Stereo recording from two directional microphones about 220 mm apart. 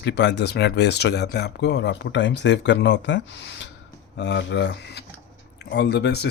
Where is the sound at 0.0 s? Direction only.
50° left (ahead or behind).